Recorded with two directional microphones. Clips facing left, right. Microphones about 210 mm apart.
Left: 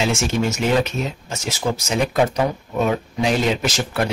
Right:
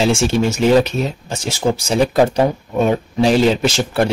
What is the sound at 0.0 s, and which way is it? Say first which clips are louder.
Speech: right 5 dB; 30° right (ahead or behind).